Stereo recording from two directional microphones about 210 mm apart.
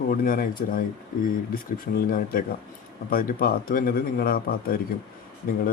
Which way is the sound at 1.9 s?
45° left (ahead or behind).